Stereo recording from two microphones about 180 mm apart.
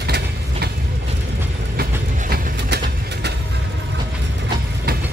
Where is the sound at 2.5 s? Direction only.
70° right (ahead or behind).